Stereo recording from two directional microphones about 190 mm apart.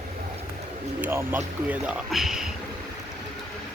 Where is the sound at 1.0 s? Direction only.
10° right (ahead or behind).